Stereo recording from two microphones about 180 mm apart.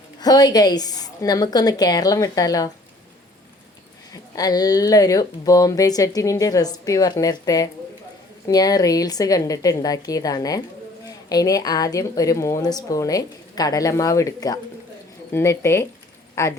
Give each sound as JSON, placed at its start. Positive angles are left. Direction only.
{"t": 0.2, "sound": "speech", "side_deg": 20}
{"t": 4.1, "sound": "speech", "side_deg": 20}